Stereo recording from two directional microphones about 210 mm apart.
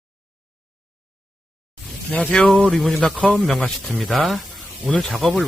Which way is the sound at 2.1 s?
5° left (ahead or behind).